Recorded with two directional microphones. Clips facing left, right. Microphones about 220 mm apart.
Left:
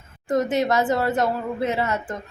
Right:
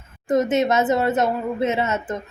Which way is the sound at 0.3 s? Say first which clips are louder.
Right 2 dB; 20° right (ahead or behind).